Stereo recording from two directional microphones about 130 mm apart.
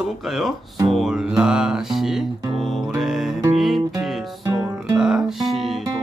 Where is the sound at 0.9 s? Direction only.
Centre (ahead or behind).